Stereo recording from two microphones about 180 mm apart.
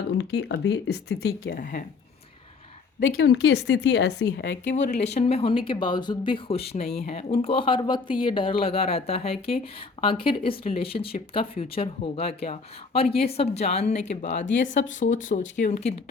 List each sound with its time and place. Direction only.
0.2 s speech: 70° left (ahead or behind)
3.0 s speech: 90° left
5.1 s speech: 35° left (ahead or behind)